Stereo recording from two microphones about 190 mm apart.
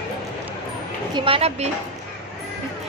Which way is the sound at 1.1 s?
30° right (ahead or behind).